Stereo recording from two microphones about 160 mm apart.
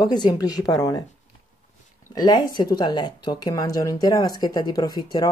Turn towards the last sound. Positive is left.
turn(degrees=25)  # may be behind; listen again after turning